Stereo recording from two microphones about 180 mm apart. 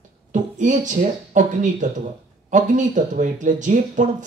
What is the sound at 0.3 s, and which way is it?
Speech, 45° right (ahead or behind).